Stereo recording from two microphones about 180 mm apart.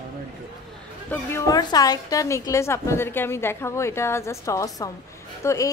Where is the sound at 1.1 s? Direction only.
15° left (ahead or behind).